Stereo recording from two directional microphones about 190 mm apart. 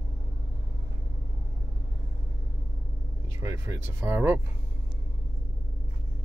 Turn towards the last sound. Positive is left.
turn(degrees=-10)  # may be behind; listen again after turning